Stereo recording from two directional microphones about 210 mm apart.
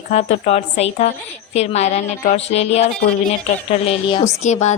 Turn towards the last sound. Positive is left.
turn(degrees=35)  # may be behind; listen again after turning